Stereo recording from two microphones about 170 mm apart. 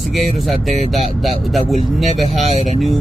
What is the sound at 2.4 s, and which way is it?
Speech, 40° right (ahead or behind).